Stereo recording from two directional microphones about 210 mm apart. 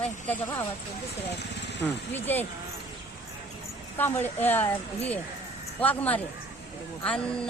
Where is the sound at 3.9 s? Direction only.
10° left (ahead or behind).